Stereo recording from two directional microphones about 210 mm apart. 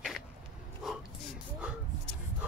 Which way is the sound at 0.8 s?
5° right (ahead or behind).